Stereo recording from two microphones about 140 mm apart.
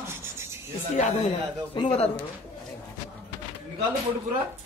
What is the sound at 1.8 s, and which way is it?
Speech, 35° left (ahead or behind).